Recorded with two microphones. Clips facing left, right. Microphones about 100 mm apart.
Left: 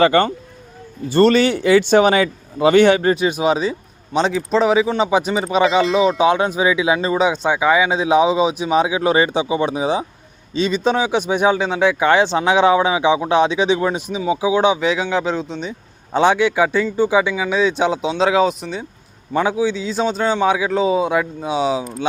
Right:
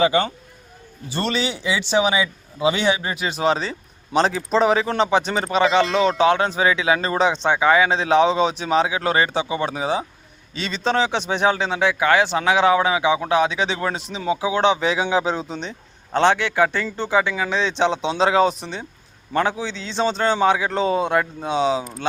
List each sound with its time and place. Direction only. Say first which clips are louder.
0.0 s speech: left 4 dB; 60° left (ahead or behind)
3.2 s speech: left 4 dB; 15° left (ahead or behind)
4.1 s a man's voice: left 1 dB; centre (ahead or behind)
14.8 s a man's voice: left 1 dB; centre (ahead or behind)
16.1 s a man's voice: left 3 dB; 10° left (ahead or behind)